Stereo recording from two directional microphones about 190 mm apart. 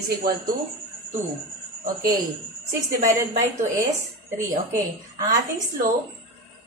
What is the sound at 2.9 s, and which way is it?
Speech, 45° right (ahead or behind).